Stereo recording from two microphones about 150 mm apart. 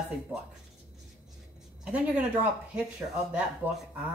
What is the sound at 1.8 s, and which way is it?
Speech, 10° right (ahead or behind).